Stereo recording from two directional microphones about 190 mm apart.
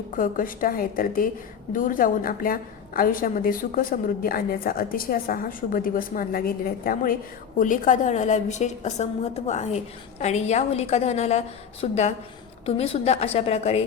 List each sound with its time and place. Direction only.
0.1 s a woman's voice: 45° left (ahead or behind)